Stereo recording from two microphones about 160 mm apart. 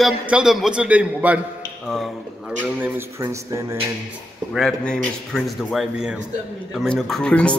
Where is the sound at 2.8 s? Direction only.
20° right (ahead or behind).